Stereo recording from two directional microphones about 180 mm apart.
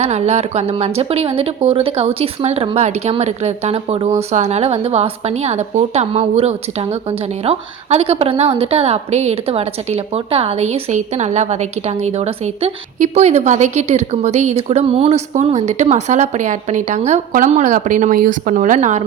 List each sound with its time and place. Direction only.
0.0 s a woman's voice: 35° right (ahead or behind)